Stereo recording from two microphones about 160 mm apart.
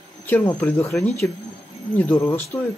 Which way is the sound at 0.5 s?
15° left (ahead or behind).